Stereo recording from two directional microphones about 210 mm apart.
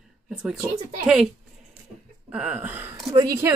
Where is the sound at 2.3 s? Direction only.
5° right (ahead or behind).